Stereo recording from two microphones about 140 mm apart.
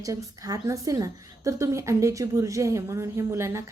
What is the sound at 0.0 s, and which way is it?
A woman's voice, 25° right (ahead or behind).